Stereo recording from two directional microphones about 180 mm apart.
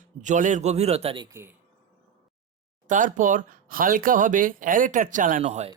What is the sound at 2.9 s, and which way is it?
Speech, 45° right (ahead or behind).